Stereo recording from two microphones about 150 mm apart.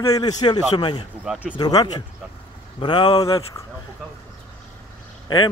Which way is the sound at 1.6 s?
25° left (ahead or behind).